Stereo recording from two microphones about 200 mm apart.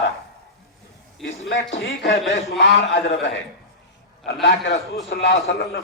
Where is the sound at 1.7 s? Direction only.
65° left (ahead or behind).